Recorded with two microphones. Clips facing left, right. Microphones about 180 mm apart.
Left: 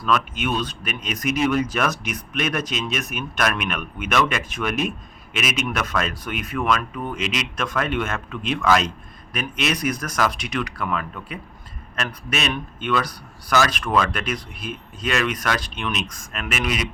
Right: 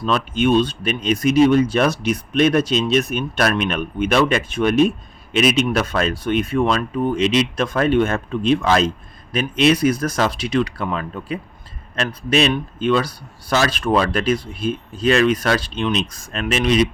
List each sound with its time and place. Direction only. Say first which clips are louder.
0.0 s speech: right 5 dB; 30° right (ahead or behind)